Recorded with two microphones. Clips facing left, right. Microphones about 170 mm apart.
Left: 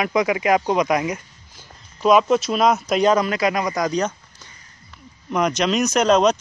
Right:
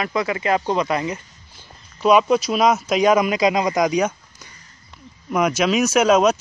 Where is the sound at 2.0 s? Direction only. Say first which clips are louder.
Even; 5° right (ahead or behind).